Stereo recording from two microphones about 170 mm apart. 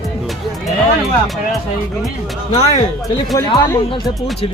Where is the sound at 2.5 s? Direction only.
35° left (ahead or behind).